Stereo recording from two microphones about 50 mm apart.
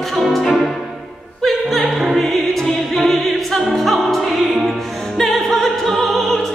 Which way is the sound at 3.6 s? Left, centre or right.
Centre.